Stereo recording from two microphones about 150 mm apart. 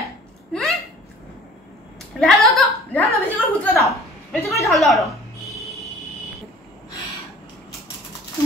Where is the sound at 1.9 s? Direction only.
Centre (ahead or behind).